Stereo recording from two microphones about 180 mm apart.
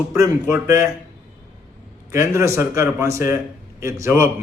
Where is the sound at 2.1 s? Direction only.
15° right (ahead or behind).